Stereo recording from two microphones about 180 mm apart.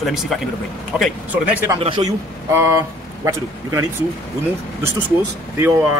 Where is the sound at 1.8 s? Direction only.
25° right (ahead or behind).